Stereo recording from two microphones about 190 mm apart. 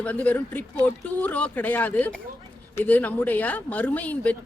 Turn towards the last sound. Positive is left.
turn(degrees=10)  # may be behind; listen again after turning